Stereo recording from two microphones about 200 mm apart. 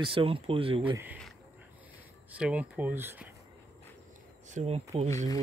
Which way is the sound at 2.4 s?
5° right (ahead or behind).